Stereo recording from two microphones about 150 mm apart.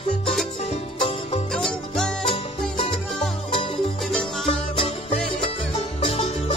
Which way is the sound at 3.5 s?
35° left (ahead or behind).